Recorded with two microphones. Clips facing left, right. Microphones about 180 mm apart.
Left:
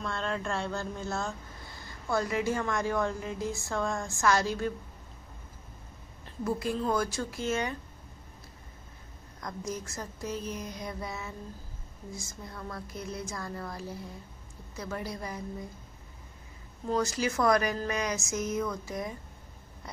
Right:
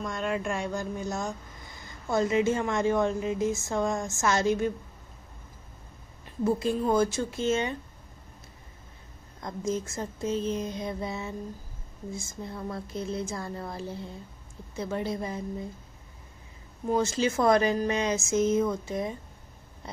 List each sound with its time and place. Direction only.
0.0 s speech: 15° right (ahead or behind)
6.4 s speech: 25° right (ahead or behind)
9.4 s speech: 25° right (ahead or behind)
16.9 s speech: 25° right (ahead or behind)